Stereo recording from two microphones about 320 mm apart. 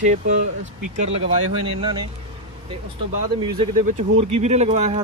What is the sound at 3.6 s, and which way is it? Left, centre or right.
Speech, centre.